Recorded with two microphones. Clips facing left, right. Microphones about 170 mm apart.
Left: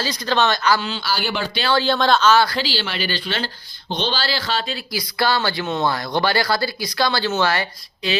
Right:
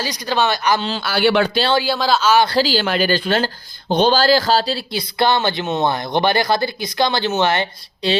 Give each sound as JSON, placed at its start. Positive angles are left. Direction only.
{"t": 0.0, "sound": "speech", "side_deg": -15}
{"t": 1.0, "sound": "speech", "side_deg": -70}
{"t": 1.7, "sound": "speech", "side_deg": -10}
{"t": 2.5, "sound": "speech", "side_deg": -40}